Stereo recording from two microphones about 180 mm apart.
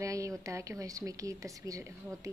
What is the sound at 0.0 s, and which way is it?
A woman's voice, 15° right (ahead or behind).